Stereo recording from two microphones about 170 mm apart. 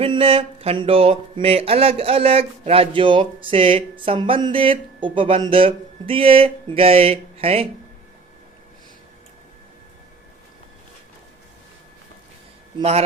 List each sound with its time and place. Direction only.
0.0 s speech: 35° right (ahead or behind)